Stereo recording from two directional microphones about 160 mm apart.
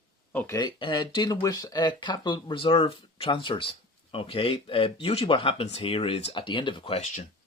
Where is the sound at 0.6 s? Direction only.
30° left (ahead or behind).